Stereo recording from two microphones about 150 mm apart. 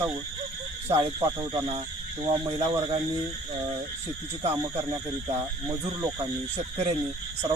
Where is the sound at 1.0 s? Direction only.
30° right (ahead or behind).